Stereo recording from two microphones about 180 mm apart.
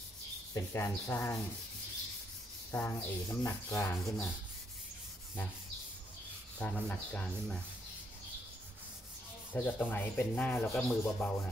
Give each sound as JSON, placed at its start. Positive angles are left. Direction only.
{"t": 0.6, "sound": "rub", "side_deg": 15}
{"t": 2.7, "sound": "rub", "side_deg": 10}
{"t": 6.6, "sound": "rub", "side_deg": 10}
{"t": 9.5, "sound": "rub", "side_deg": 10}